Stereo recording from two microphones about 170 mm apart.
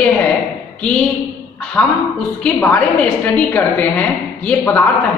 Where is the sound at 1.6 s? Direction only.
10° left (ahead or behind).